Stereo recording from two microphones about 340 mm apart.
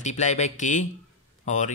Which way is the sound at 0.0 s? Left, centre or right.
Centre.